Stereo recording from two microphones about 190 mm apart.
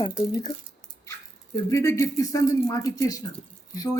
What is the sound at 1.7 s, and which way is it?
A woman's voice, 15° left (ahead or behind).